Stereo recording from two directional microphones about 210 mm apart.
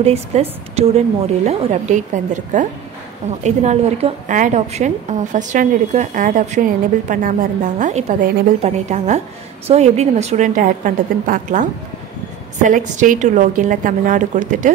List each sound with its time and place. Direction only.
0.0 s a woman's voice: 30° right (ahead or behind)
12.6 s a woman's voice: 35° right (ahead or behind)